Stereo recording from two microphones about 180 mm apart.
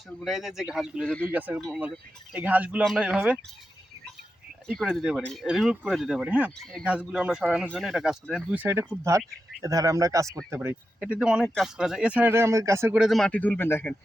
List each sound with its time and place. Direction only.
0.3 s speech: centre (ahead or behind)
4.8 s speech: centre (ahead or behind)